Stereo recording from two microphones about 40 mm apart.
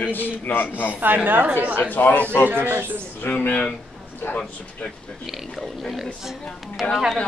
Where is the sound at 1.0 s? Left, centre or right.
Right.